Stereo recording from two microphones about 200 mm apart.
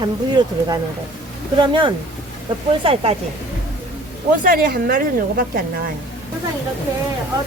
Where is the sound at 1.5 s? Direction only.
25° right (ahead or behind).